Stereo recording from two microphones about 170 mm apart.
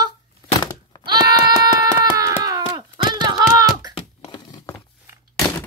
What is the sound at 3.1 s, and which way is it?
Hands, 20° right (ahead or behind).